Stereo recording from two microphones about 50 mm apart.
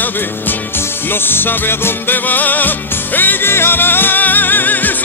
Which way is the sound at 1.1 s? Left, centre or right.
Left.